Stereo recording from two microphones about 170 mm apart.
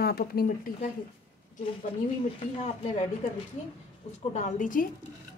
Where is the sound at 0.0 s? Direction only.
65° left (ahead or behind).